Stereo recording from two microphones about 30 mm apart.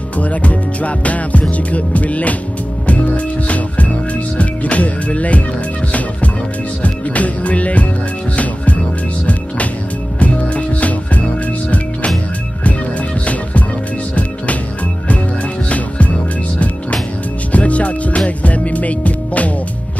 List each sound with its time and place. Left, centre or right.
0.2 s music: left
3.4 s music: left
6.8 s music: left
10.1 s music: left
17.5 s music: left